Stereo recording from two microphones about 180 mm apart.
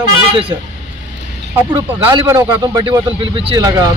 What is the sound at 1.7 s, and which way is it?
Speech, 20° right (ahead or behind).